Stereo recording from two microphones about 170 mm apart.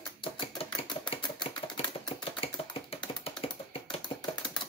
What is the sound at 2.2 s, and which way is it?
Typing, 35° left (ahead or behind).